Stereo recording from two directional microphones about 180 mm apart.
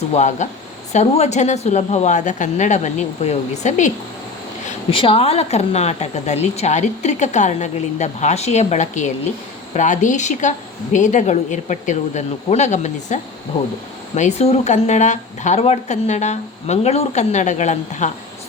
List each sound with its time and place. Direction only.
0.1 s a woman's voice: 40° left (ahead or behind)
4.9 s a woman's voice: 30° left (ahead or behind)
14.2 s a woman's voice: 40° left (ahead or behind)